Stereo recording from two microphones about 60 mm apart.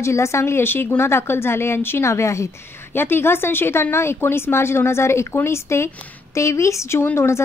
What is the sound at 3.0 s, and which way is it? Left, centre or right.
A woman's voice, left.